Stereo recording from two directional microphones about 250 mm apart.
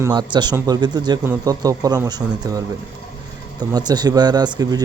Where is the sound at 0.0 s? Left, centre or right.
Centre.